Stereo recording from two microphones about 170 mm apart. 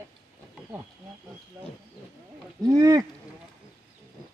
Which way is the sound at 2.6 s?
20° right (ahead or behind).